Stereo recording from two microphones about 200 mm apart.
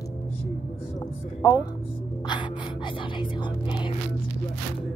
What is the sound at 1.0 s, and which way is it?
Music, 20° left (ahead or behind).